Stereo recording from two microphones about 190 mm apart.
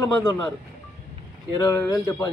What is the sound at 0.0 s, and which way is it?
Speech, 20° left (ahead or behind).